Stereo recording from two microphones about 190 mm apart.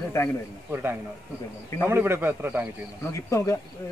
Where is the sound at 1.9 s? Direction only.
10° right (ahead or behind).